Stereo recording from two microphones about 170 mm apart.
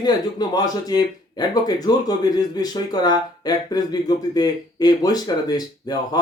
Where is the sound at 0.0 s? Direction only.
25° left (ahead or behind).